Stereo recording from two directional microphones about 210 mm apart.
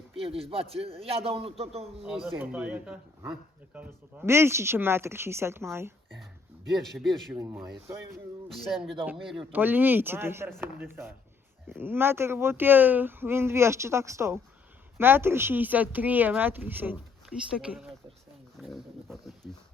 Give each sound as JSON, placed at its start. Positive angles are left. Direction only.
{"t": 0.2, "sound": "a man's voice", "side_deg": -25}
{"t": 2.0, "sound": "speech", "side_deg": 0}
{"t": 6.7, "sound": "speech", "side_deg": 0}
{"t": 7.3, "sound": "speech", "side_deg": -10}
{"t": 18.6, "sound": "dog", "side_deg": 0}